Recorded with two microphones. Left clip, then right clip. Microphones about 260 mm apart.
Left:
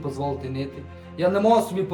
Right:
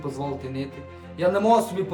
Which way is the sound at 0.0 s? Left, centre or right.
Centre.